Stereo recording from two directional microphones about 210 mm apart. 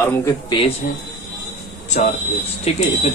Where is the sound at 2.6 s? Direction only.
30° left (ahead or behind).